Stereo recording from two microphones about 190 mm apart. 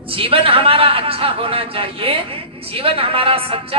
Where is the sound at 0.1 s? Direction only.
30° right (ahead or behind).